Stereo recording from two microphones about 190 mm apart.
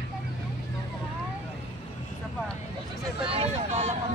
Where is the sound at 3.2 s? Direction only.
30° right (ahead or behind).